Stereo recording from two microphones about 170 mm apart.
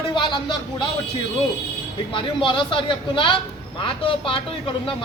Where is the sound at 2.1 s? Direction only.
30° left (ahead or behind).